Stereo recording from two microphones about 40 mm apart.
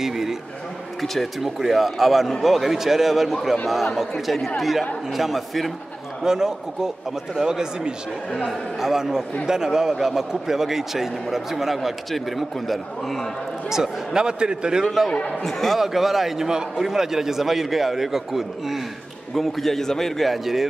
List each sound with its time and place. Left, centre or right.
0.0 s a man's voice: centre
1.0 s a man's voice: centre
6.2 s a man's voice: centre
13.7 s speech: centre
15.1 s speech: left
15.4 s a man's voice: centre